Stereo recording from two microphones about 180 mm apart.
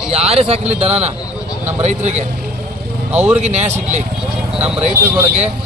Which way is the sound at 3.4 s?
40° right (ahead or behind).